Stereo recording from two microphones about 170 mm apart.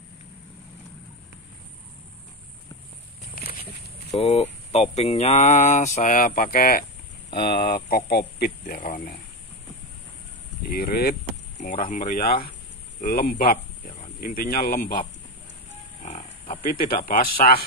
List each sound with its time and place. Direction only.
3.3 s a sound: 65° left (ahead or behind)
4.1 s speech: 35° left (ahead or behind); by 6.9 s 60° left (ahead or behind)
7.3 s speech: 70° left (ahead or behind)
10.6 s speech: 65° left (ahead or behind)
11.6 s speech: 50° left (ahead or behind)
16.0 s livestock: 40° left (ahead or behind)
17.1 s speech: 55° left (ahead or behind)